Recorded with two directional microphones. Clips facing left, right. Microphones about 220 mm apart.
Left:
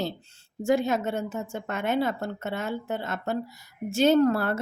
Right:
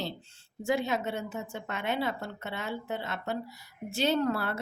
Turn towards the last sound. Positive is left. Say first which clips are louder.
# left 7 dB
turn(degrees=45)  # may be behind; listen again after turning